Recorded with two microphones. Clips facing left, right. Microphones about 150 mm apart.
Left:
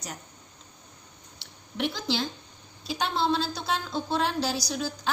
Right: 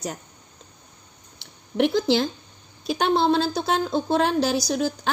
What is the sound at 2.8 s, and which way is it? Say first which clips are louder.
A woman's voice: right 7 dB; 55° right (ahead or behind).